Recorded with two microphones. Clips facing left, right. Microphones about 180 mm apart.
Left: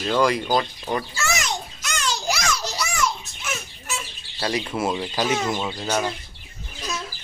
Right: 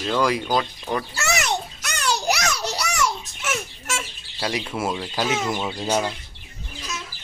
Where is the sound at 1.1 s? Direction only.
65° right (ahead or behind).